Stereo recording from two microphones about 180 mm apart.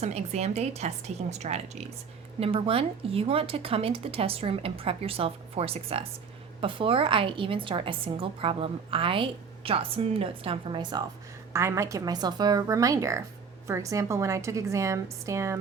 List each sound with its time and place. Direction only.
0.0 s a woman's voice: 35° right (ahead or behind)
11.5 s a woman's voice: 15° right (ahead or behind)